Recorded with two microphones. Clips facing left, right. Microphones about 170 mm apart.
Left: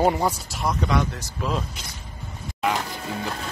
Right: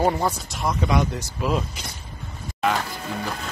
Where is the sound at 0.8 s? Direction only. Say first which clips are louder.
Right 2 dB; 15° right (ahead or behind).